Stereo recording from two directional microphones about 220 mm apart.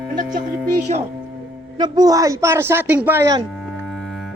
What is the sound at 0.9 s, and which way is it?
Speech, 30° right (ahead or behind).